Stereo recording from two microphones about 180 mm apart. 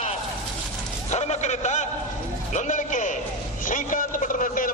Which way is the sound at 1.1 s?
40° left (ahead or behind).